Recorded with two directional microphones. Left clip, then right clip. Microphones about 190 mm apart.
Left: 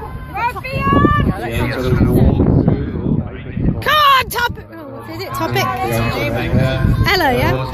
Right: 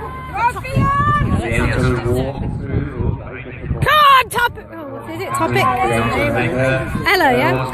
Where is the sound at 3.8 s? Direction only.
Centre (ahead or behind).